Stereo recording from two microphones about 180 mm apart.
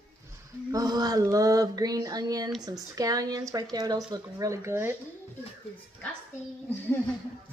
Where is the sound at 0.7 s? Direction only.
20° right (ahead or behind).